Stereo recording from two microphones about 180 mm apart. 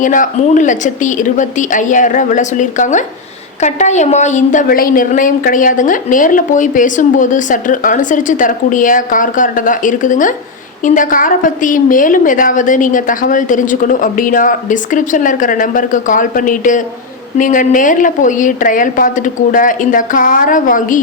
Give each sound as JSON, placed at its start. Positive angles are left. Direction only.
{"t": 0.0, "sound": "a woman's voice", "side_deg": 45}